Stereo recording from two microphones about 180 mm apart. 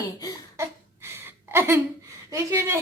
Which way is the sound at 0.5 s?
15° right (ahead or behind).